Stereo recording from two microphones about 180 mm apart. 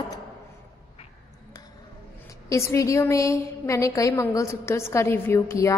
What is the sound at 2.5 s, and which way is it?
A woman's voice, 15° left (ahead or behind).